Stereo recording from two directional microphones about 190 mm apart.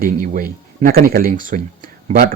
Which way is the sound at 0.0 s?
50° right (ahead or behind).